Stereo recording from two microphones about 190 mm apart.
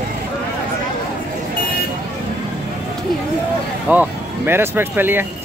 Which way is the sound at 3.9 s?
10° right (ahead or behind).